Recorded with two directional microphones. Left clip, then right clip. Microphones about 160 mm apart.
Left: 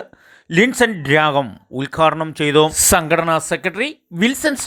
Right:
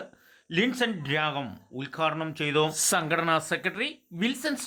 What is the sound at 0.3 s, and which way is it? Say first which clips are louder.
A man's voice: left 12 dB; 45° left (ahead or behind).